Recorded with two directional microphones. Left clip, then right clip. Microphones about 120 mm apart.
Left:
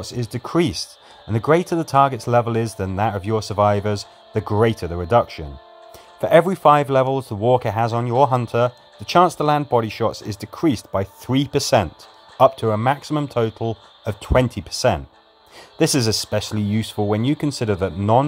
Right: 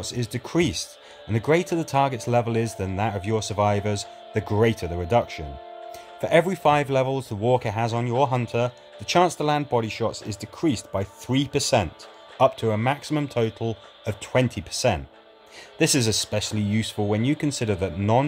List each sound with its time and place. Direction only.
0.0 s speech: 15° left (ahead or behind)